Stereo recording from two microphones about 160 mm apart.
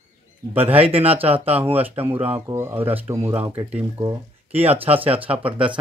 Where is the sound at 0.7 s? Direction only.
35° right (ahead or behind).